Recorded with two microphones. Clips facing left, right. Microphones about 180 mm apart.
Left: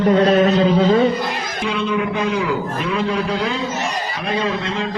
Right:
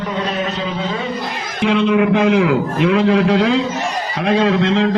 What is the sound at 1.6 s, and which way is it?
A man's voice, 90° right.